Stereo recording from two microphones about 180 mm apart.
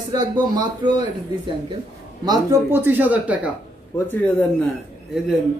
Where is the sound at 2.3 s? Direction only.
15° right (ahead or behind).